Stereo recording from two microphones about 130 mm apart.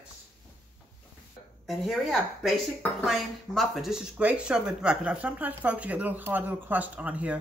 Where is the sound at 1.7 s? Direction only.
Centre (ahead or behind).